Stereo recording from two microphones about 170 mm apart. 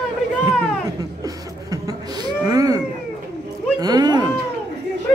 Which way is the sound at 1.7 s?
20° right (ahead or behind).